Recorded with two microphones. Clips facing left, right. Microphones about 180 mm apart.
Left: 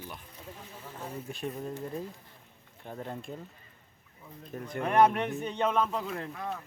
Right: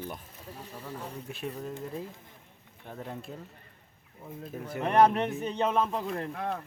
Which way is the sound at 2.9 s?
Centre (ahead or behind).